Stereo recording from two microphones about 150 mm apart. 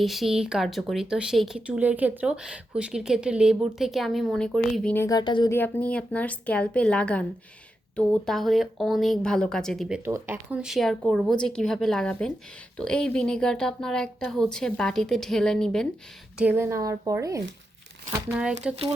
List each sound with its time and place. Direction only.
0.0 s speech: centre (ahead or behind)
5.0 s speech: 30° left (ahead or behind)
5.5 s a woman's voice: 15° left (ahead or behind)
10.0 s speech: 15° right (ahead or behind); by 15.9 s 5° left (ahead or behind)
16.4 s a woman's voice: 15° right (ahead or behind)
18.6 s speech: 5° right (ahead or behind)